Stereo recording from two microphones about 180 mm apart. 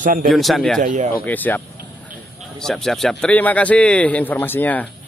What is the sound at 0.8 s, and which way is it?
Speech, 40° right (ahead or behind).